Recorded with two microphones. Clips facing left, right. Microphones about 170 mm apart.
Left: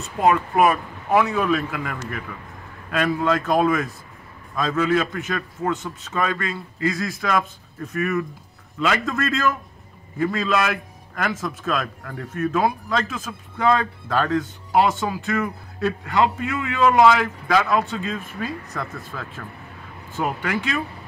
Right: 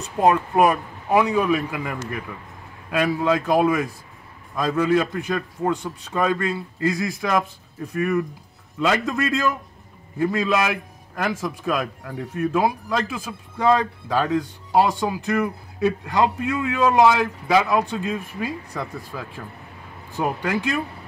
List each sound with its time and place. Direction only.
0.0 s a man's voice: 15° right (ahead or behind)